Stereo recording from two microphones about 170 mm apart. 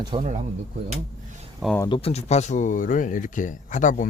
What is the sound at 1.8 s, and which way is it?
Speech, 30° left (ahead or behind).